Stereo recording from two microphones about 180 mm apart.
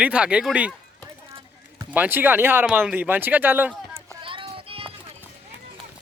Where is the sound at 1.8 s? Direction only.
10° right (ahead or behind).